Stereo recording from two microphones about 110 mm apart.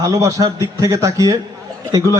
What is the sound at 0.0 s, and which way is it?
A man's voice, 30° right (ahead or behind).